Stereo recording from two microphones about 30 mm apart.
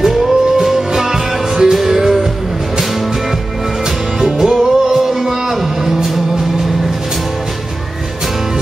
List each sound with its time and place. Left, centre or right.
0.0 s music: centre
4.2 s music: centre